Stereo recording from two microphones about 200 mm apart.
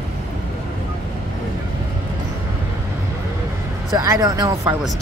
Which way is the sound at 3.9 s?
15° right (ahead or behind).